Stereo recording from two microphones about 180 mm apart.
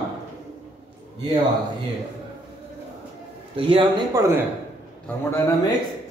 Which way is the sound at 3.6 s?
30° right (ahead or behind).